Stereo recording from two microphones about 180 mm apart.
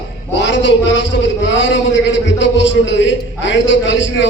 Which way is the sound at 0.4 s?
80° left.